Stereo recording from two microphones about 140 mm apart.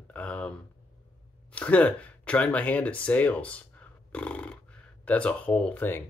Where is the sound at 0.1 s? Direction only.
10° left (ahead or behind).